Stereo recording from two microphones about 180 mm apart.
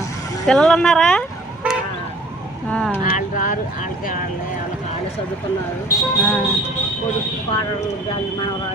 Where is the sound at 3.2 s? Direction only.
45° left (ahead or behind).